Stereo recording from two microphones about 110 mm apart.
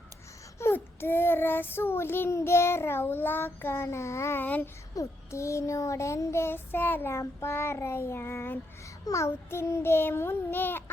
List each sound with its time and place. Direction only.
0.6 s child singing: 20° left (ahead or behind)